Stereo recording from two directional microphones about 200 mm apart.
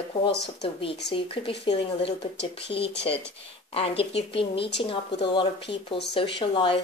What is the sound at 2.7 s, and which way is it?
Speech, 25° left (ahead or behind).